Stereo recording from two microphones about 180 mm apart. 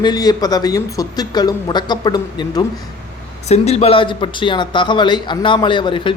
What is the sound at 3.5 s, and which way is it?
Speech, 35° left (ahead or behind).